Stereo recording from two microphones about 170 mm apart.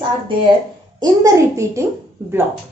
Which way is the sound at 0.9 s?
20° right (ahead or behind).